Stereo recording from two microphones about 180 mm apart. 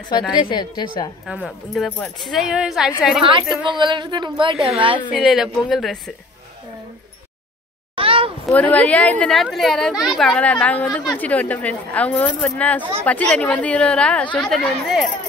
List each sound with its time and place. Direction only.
0.3 s a woman's voice: 25° left (ahead or behind)
1.2 s speech: centre (ahead or behind)
3.3 s a woman's voice: 25° right (ahead or behind)
4.6 s speech: centre (ahead or behind)
7.9 s a sound: 30° right (ahead or behind)
8.5 s speech: 10° left (ahead or behind)
14.2 s a woman's voice: 25° left (ahead or behind)
14.5 s speech: centre (ahead or behind)